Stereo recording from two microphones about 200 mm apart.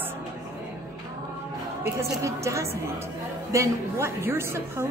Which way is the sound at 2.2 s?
15° right (ahead or behind).